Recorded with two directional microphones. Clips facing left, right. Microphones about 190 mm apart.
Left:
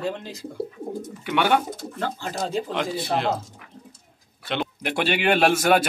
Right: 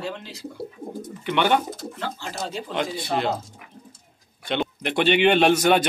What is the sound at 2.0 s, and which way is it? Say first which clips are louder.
Speech: left 5 dB; 45° left (ahead or behind).